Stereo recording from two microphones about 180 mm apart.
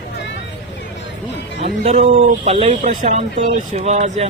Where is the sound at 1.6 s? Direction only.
35° right (ahead or behind).